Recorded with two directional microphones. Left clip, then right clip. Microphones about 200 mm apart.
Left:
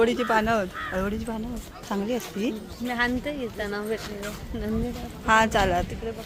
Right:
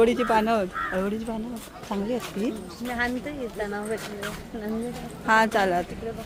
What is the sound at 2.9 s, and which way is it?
Speech, 50° left (ahead or behind).